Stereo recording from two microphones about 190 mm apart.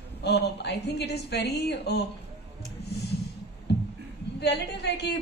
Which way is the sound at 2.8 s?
60° left (ahead or behind).